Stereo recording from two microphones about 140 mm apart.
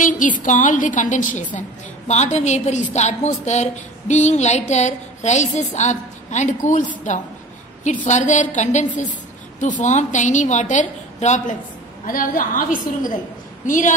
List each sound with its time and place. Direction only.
0.0 s a woman's voice: 70° left (ahead or behind)
12.1 s a woman's voice: 75° left (ahead or behind)